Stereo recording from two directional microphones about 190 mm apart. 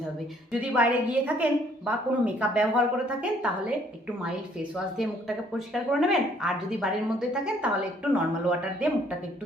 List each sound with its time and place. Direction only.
0.6 s speech: 5° right (ahead or behind)
5.5 s speech: centre (ahead or behind)